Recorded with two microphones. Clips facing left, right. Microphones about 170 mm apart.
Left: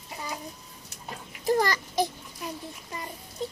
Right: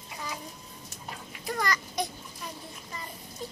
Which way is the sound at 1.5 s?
30° left (ahead or behind).